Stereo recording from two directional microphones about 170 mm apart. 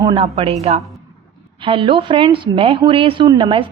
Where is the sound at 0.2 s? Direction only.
35° right (ahead or behind).